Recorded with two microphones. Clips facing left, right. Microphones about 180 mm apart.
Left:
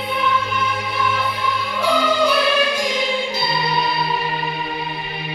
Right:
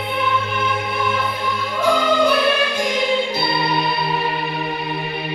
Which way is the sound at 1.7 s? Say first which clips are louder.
Right 2 dB; 50° right (ahead or behind).